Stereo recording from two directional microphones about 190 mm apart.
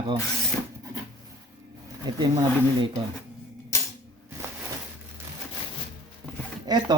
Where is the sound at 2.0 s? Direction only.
20° right (ahead or behind).